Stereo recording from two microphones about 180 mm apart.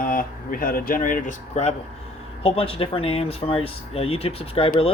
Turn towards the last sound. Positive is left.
turn(degrees=30)  # may be behind; listen again after turning